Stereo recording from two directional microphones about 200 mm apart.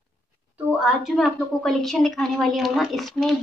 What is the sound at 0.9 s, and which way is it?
A woman's voice, centre (ahead or behind).